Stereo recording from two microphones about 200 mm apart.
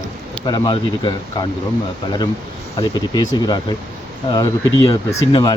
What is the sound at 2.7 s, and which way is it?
Speech, 20° left (ahead or behind).